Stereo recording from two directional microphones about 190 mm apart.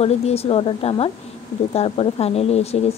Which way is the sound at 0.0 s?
30° left (ahead or behind).